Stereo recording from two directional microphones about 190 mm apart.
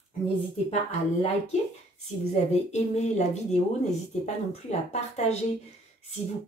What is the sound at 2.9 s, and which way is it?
Speech, 35° left (ahead or behind).